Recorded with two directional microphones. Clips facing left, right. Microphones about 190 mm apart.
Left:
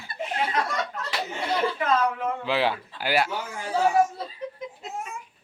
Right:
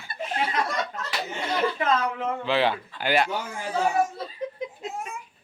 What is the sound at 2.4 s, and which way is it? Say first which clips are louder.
Speech: right 2 dB; 10° left (ahead or behind).